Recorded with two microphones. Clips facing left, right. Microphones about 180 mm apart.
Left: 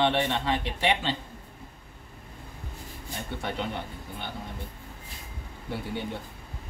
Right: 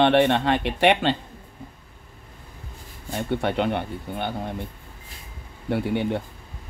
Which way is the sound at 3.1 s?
65° right (ahead or behind).